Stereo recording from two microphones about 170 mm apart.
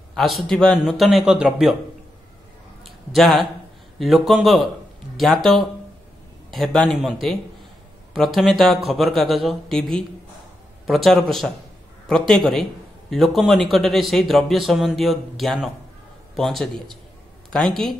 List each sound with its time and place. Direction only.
0.1 s a man's voice: centre (ahead or behind)
2.8 s a sound: centre (ahead or behind)
4.0 s a man's voice: centre (ahead or behind)